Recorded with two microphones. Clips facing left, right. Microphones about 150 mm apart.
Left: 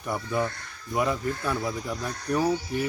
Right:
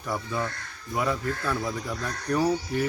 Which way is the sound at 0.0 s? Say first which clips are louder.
Left 2 dB; 15° left (ahead or behind).